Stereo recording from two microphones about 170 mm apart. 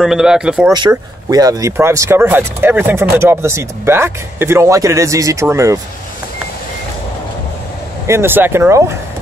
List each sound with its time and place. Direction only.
0.0 s speech: centre (ahead or behind)
0.7 s speech: 25° right (ahead or behind)
8.1 s speech: 15° right (ahead or behind)